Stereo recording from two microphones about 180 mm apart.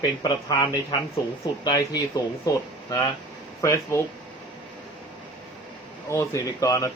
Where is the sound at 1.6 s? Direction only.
20° left (ahead or behind).